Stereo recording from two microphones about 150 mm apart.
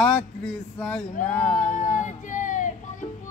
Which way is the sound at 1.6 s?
55° left (ahead or behind).